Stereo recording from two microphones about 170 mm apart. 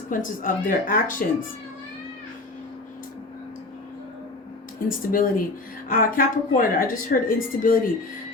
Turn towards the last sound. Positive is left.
turn(degrees=55)  # may be behind; listen again after turning